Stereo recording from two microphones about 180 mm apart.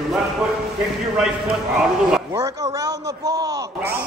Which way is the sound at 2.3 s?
20° right (ahead or behind).